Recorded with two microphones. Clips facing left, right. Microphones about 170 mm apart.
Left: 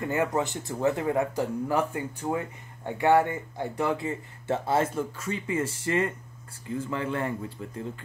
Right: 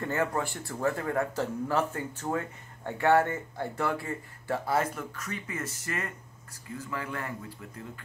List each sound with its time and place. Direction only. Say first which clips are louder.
0.0 s speech: left 3 dB; 15° left (ahead or behind)